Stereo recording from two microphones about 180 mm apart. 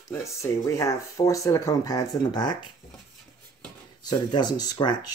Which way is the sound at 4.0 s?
25° left (ahead or behind).